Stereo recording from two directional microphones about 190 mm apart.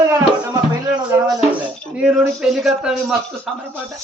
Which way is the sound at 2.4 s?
Centre (ahead or behind).